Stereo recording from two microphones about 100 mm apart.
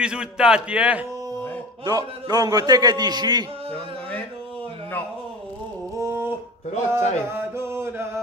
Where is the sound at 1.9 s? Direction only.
40° right (ahead or behind).